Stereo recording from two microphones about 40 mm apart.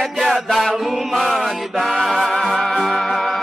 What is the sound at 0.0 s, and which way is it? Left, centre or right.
Mantra, centre.